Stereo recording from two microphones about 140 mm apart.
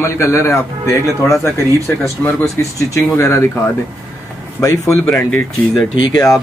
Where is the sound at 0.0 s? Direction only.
20° left (ahead or behind).